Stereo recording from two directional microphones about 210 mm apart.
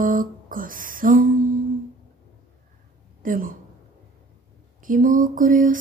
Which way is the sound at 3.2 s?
40° right (ahead or behind).